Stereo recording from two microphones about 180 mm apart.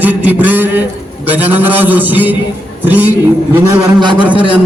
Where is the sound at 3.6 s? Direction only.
25° right (ahead or behind).